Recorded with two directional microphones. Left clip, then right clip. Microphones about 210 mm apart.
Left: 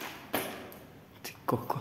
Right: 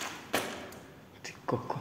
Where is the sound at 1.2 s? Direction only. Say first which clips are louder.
Left 2 dB; 25° left (ahead or behind).